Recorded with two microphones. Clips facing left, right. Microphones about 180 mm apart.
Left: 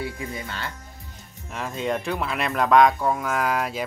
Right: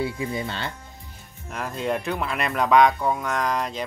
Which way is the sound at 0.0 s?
25° right (ahead or behind).